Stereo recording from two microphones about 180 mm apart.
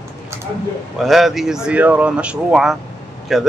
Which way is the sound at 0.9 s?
Centre (ahead or behind).